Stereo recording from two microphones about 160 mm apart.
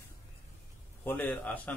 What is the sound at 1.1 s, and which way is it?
Speech, 10° left (ahead or behind).